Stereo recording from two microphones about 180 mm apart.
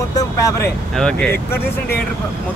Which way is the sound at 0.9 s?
5° left (ahead or behind).